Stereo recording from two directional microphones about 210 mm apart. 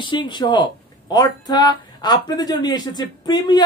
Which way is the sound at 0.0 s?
20° left (ahead or behind).